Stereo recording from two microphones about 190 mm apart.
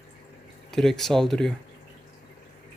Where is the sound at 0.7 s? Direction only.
Centre (ahead or behind).